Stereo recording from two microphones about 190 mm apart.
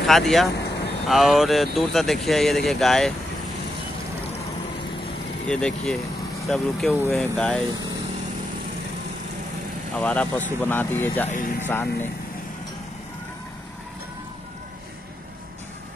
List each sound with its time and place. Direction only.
0.0 s speech: centre (ahead or behind)
5.5 s speech: 5° left (ahead or behind)
9.9 s speech: 5° left (ahead or behind)
11.2 s speech: 40° left (ahead or behind)
11.6 s speech: 10° left (ahead or behind)